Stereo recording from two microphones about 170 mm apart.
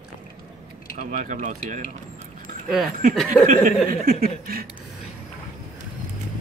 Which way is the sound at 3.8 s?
60° right (ahead or behind).